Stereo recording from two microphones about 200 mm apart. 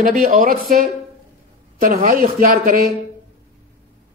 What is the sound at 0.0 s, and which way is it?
Speech, 45° right (ahead or behind).